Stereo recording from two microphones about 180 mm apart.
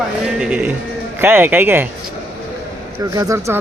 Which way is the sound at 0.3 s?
5° right (ahead or behind).